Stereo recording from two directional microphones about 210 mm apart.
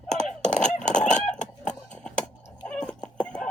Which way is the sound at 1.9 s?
5° left (ahead or behind).